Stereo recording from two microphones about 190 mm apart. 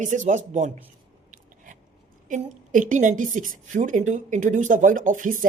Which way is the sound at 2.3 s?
40° right (ahead or behind).